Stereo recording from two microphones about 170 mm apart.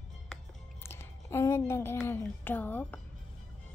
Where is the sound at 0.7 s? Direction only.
15° left (ahead or behind).